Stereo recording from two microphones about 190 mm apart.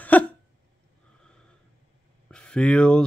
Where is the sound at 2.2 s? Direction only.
5° left (ahead or behind).